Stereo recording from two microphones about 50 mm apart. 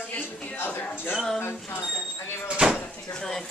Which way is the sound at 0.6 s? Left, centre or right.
Left.